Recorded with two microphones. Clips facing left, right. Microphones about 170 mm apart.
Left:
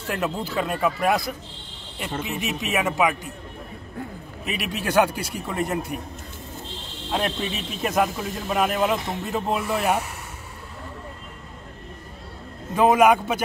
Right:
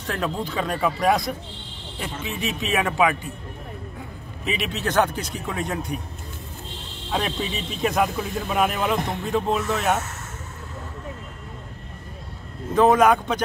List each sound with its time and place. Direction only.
0.0 s speech: 10° left (ahead or behind)
2.1 s speech: 65° left (ahead or behind)
2.8 s speech: 5° left (ahead or behind)
4.5 s speech: 10° left (ahead or behind)
7.1 s speech: centre (ahead or behind)
12.7 s speech: 10° left (ahead or behind)